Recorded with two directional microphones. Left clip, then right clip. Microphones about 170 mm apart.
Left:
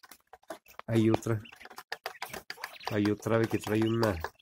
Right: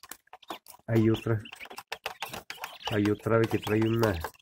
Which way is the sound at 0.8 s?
20° left (ahead or behind).